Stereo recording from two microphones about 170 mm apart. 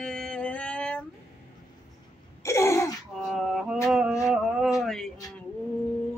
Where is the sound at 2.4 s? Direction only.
15° left (ahead or behind).